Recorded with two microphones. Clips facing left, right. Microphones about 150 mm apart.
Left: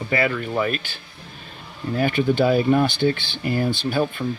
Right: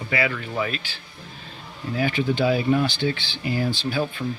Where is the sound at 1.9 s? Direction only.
50° left (ahead or behind).